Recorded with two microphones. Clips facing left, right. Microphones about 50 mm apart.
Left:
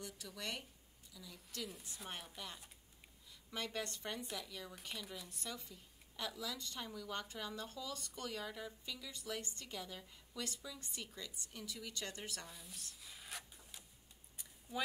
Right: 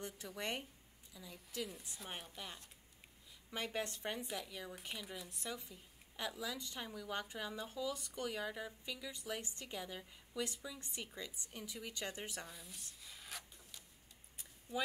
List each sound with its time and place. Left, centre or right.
0.0 s speech: right; by 1.7 s centre
1.7 s speech: centre
3.6 s speech: centre
12.4 s speech: centre
13.0 s rub: centre
14.7 s speech: centre